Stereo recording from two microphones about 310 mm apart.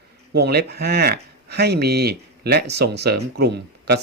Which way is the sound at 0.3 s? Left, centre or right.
Right.